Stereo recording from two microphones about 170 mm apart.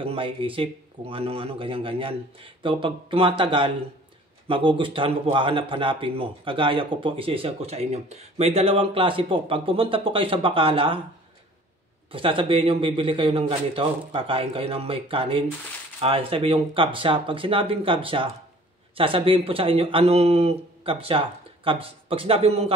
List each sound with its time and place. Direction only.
0.0 s speech: 30° right (ahead or behind)
12.1 s speech: 30° right (ahead or behind)